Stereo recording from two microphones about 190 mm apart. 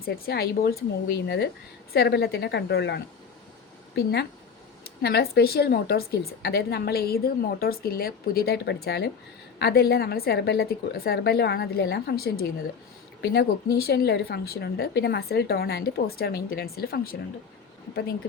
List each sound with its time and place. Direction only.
0.0 s speech: 55° left (ahead or behind)
1.9 s speech: 60° left (ahead or behind)